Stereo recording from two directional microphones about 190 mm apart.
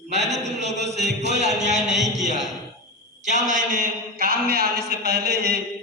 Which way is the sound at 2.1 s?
40° right (ahead or behind).